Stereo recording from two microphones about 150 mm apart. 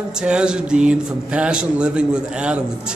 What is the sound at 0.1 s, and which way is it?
Speech, 5° right (ahead or behind).